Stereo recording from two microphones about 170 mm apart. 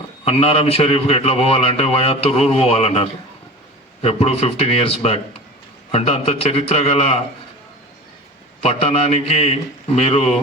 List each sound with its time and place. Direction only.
0.3 s a man's voice: 35° left (ahead or behind)
8.6 s a man's voice: 35° left (ahead or behind)